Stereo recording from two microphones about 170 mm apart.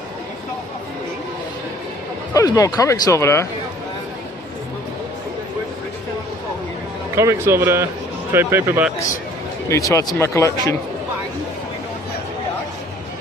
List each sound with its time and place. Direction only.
2.3 s speech: 20° left (ahead or behind)
7.2 s speech: 15° right (ahead or behind)
9.7 s speech: 20° left (ahead or behind)